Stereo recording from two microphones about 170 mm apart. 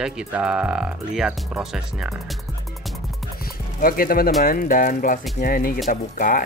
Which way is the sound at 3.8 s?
55° left (ahead or behind).